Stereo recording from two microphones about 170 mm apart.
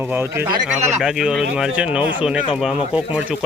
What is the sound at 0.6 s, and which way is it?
Speech, centre (ahead or behind).